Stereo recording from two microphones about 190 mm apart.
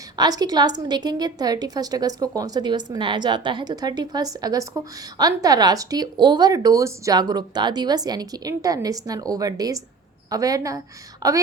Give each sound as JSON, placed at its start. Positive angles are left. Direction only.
{"t": 0.2, "sound": "a woman's voice", "side_deg": -20}